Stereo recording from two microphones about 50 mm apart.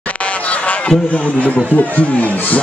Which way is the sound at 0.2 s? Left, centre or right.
Left.